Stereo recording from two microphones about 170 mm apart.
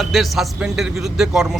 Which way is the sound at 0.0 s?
Centre (ahead or behind).